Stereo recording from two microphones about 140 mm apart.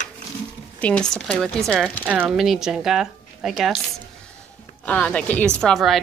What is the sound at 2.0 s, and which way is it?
A woman's voice, 10° right (ahead or behind).